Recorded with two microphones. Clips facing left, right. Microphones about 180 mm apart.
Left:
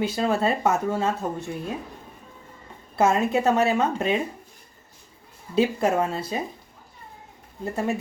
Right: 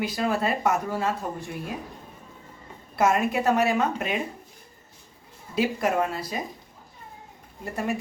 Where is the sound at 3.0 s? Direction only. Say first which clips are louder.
Left 2 dB; 25° left (ahead or behind).